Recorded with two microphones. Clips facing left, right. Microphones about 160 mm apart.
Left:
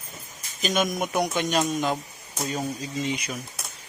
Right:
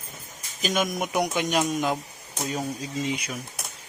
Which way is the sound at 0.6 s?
5° right (ahead or behind).